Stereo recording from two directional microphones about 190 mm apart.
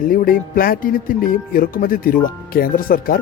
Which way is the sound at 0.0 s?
45° left (ahead or behind).